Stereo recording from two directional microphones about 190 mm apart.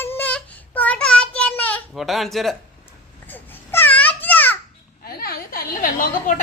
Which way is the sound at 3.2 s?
10° left (ahead or behind).